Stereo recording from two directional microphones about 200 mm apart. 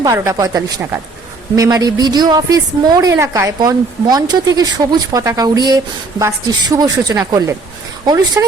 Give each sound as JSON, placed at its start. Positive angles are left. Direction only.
{"t": 0.0, "sound": "a woman's voice", "side_deg": -15}